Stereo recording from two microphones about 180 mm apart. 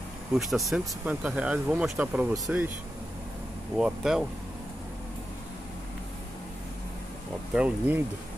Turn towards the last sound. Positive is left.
turn(degrees=-5)  # may be behind; listen again after turning